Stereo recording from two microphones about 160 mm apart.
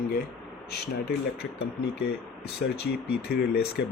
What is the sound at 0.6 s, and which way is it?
Speech, 90° left.